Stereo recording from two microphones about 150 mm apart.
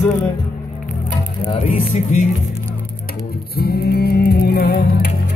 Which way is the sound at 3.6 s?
90° left.